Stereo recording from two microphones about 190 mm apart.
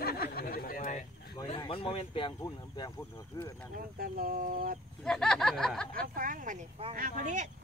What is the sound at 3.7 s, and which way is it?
Speech, 50° right (ahead or behind).